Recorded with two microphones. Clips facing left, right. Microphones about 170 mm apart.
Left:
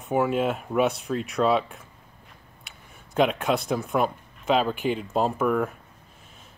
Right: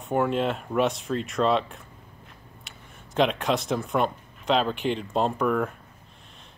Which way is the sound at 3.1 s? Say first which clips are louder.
Left 1 dB; centre (ahead or behind).